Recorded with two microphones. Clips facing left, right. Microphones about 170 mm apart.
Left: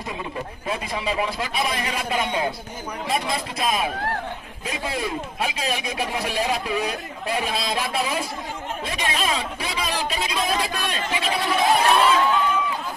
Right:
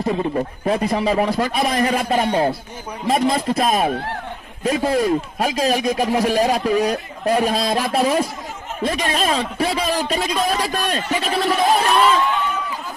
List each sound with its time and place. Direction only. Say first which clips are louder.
0.0 s speech: right 10 dB; 45° right (ahead or behind)